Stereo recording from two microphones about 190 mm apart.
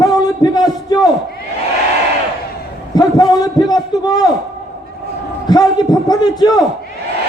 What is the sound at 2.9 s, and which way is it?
A man's voice, 20° left (ahead or behind).